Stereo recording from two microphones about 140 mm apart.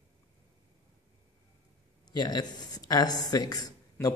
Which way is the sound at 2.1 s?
30° left (ahead or behind).